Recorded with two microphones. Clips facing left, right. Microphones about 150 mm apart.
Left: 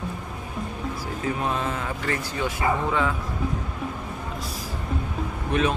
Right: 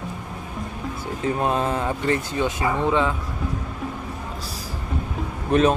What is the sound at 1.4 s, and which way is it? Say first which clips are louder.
Speech: right 5 dB; 35° right (ahead or behind).